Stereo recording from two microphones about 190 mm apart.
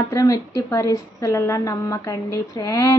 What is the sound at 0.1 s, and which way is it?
A woman's voice, 20° left (ahead or behind).